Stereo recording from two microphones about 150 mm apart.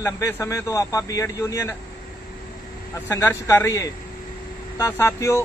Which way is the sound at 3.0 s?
20° left (ahead or behind).